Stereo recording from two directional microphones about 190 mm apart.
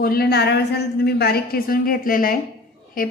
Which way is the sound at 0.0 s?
55° left (ahead or behind).